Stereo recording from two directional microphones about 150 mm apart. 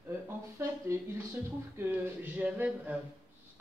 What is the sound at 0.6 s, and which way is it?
Speech, 15° right (ahead or behind).